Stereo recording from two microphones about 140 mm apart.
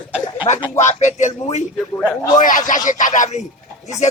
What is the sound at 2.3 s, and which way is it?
A man's voice, 70° left (ahead or behind).